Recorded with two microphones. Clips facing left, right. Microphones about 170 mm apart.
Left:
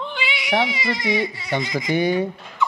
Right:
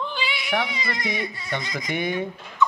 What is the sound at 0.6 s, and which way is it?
Speech, 90° left.